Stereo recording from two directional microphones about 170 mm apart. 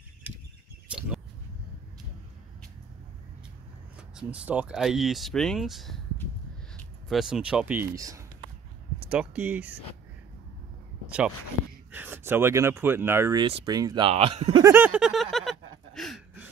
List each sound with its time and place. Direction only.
0.9 s a sound: 5° right (ahead or behind)
4.1 s speech: 5° right (ahead or behind)
7.1 s speech: 5° right (ahead or behind)
7.9 s speech: 20° right (ahead or behind)
9.1 s speech: 10° right (ahead or behind)
11.1 s speech: 5° right (ahead or behind); by 14.6 s 35° right (ahead or behind)
14.6 s a sound: 10° right (ahead or behind)